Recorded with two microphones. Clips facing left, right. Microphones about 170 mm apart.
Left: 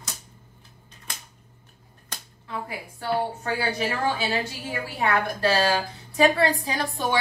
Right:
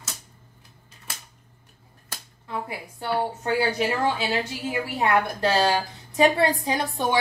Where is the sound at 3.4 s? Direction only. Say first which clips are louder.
Right 3 dB; 20° right (ahead or behind).